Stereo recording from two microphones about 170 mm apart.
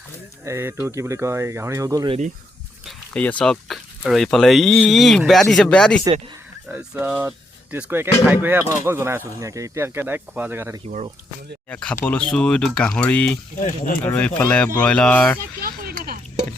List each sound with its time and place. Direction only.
0.4 s speech: 15° right (ahead or behind)
2.8 s speech: 5° left (ahead or behind)
6.7 s speech: 10° right (ahead or behind)
10.8 s speech: 40° right (ahead or behind)
11.7 s speech: 5° left (ahead or behind)
13.6 s speech: 50° left (ahead or behind)
14.0 s speech: 10° left (ahead or behind)
15.6 s a sound: 55° right (ahead or behind)